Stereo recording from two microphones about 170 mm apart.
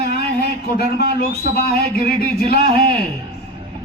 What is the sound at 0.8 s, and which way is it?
A man's voice, 65° left (ahead or behind).